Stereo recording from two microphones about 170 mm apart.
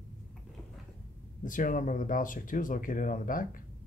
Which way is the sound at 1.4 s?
50° left (ahead or behind).